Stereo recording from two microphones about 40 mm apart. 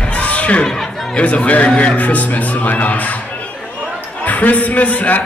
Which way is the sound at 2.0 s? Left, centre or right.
Left.